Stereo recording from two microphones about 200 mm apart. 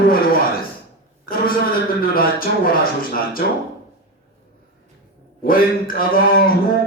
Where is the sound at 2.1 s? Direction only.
45° left (ahead or behind).